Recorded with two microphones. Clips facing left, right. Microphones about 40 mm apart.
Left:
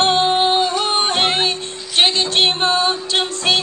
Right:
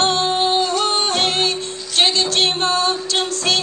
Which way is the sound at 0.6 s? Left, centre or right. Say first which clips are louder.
Left 1 dB; centre.